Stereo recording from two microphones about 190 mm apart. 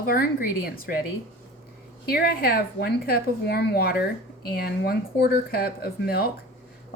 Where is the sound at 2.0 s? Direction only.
55° left (ahead or behind).